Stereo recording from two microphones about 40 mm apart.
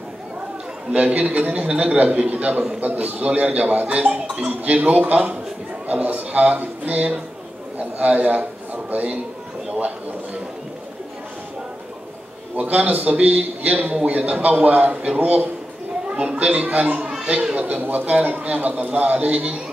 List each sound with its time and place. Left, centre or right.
0.9 s a man's voice: right
12.5 s speech: right
15.1 s a man's voice: right
16.1 s speech: right
17.1 s chatter: right
17.6 s speech: right